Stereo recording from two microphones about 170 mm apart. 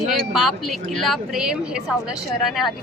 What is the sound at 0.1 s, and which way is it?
A woman's voice, centre (ahead or behind).